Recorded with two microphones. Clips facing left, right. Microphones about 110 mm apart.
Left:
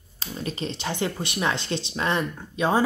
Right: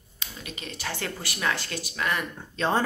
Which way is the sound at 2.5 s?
10° left (ahead or behind).